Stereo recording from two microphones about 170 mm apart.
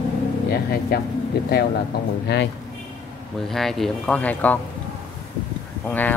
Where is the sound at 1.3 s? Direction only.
70° left (ahead or behind).